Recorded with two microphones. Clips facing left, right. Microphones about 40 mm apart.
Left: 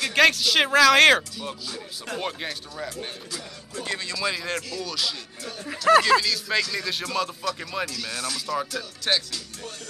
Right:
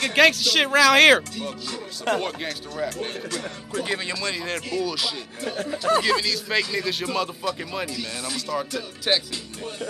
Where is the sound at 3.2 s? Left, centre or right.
Right.